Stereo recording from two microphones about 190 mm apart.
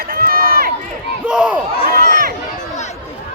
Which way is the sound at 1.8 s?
50° right (ahead or behind).